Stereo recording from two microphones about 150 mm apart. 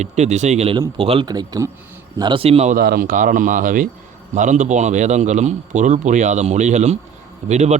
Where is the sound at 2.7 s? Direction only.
70° right (ahead or behind).